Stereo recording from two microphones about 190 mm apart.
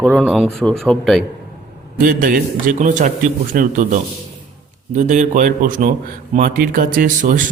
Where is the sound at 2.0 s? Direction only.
50° right (ahead or behind).